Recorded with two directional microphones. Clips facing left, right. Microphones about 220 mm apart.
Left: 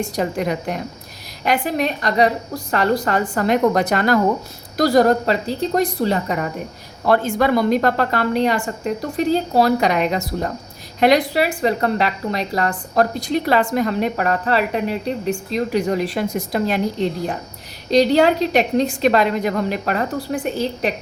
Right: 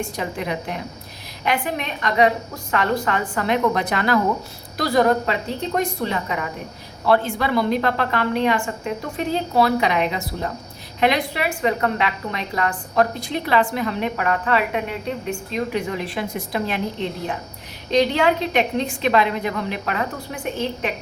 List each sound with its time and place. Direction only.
0.2 s a woman's voice: 45° left (ahead or behind)